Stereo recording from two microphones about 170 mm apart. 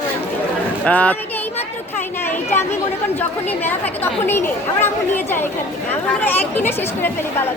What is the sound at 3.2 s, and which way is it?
A woman's voice, 10° left (ahead or behind).